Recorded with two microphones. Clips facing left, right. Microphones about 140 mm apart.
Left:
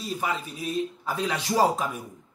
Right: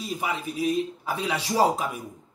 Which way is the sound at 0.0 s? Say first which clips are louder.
Even; 10° right (ahead or behind).